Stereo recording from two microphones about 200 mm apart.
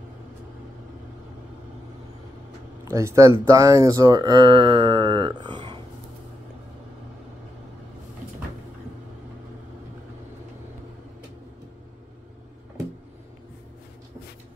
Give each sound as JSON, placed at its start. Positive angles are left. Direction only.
{"t": 2.8, "sound": "speech", "side_deg": -15}